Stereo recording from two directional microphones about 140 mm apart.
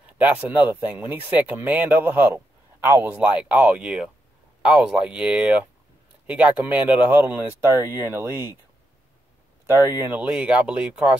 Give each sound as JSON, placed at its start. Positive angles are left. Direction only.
{"t": 0.0, "sound": "speech", "side_deg": -10}
{"t": 9.7, "sound": "speech", "side_deg": -15}